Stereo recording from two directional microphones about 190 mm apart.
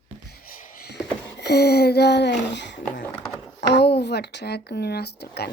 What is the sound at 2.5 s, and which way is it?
A child's voice, 65° left (ahead or behind).